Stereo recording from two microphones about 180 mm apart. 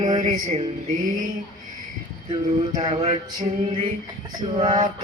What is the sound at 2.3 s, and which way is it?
Mantra, 25° right (ahead or behind).